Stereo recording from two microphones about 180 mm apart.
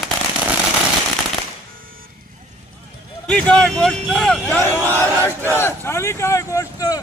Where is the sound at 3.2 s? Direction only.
5° left (ahead or behind).